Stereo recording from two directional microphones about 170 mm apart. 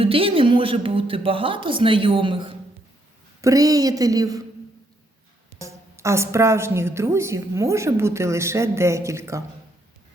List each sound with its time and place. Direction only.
0.0 s a woman's voice: 35° right (ahead or behind)
5.5 s a woman's voice: 15° right (ahead or behind)